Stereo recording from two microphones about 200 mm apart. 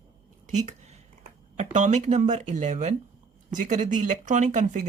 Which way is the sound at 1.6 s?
35° right (ahead or behind).